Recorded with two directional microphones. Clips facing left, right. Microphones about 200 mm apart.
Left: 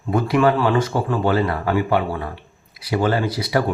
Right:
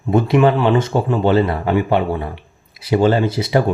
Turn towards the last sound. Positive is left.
turn(degrees=-25)  # may be behind; listen again after turning